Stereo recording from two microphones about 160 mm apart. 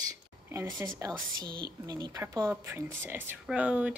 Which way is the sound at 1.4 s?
25° right (ahead or behind).